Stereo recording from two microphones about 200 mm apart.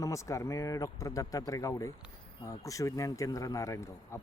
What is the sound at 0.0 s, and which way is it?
A man's voice, 15° left (ahead or behind).